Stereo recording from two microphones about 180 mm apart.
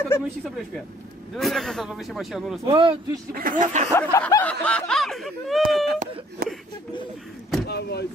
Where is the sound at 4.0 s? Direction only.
15° left (ahead or behind).